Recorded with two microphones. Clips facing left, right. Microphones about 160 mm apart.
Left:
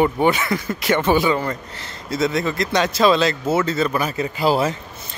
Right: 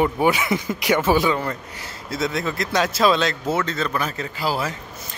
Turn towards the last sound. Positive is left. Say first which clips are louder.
# left 6 dB
turn(degrees=25)  # may be behind; listen again after turning